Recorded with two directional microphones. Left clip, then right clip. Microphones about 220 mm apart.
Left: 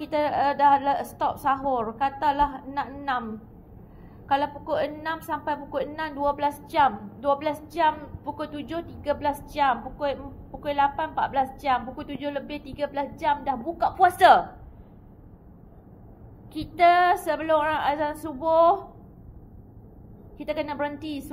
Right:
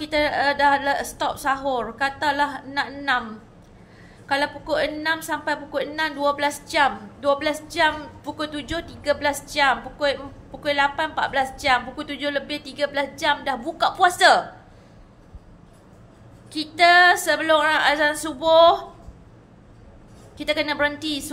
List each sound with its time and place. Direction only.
0.0 s a woman's voice: 15° right (ahead or behind)
4.3 s a woman's voice: 15° right (ahead or behind)
16.5 s a woman's voice: 15° right (ahead or behind)
20.3 s a woman's voice: 15° right (ahead or behind)